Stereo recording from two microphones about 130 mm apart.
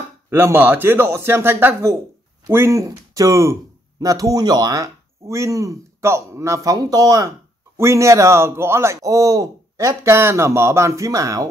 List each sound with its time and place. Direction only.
0.3 s a man's voice: 15° right (ahead or behind)